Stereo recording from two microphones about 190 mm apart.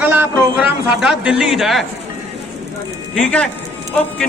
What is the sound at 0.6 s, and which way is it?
Speech, 5° right (ahead or behind).